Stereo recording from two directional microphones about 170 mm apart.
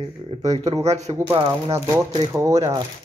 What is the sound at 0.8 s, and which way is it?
Speech, 40° right (ahead or behind).